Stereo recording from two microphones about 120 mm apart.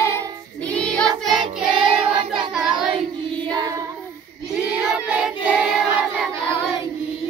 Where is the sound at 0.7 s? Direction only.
10° left (ahead or behind).